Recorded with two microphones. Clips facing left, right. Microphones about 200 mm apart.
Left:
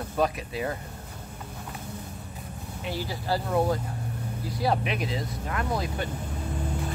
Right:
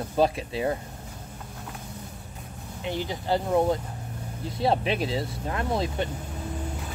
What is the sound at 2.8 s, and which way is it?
Speech, 20° right (ahead or behind).